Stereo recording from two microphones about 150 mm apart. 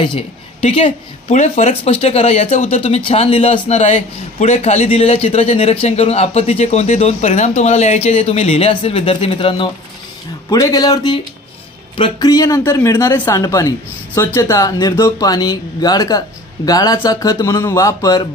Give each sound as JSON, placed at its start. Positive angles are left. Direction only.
{"t": 0.0, "sound": "a man's voice", "side_deg": 40}
{"t": 10.5, "sound": "speech", "side_deg": 25}